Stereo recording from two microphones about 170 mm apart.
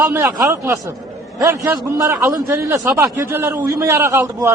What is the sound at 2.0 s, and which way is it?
A man's voice, 20° right (ahead or behind).